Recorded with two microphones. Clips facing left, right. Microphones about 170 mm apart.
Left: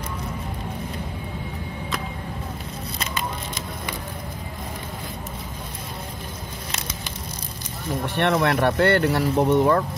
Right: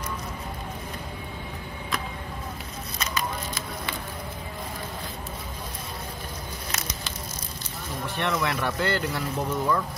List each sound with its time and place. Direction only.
8.2 s speech: 60° left (ahead or behind)